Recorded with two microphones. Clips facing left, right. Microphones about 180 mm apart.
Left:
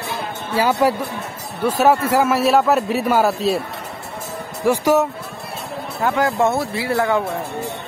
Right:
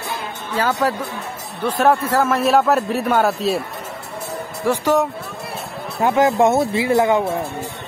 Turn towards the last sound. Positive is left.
turn(degrees=-20)  # may be behind; listen again after turning